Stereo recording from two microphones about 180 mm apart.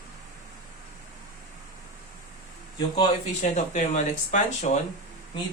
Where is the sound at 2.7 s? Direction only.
25° left (ahead or behind).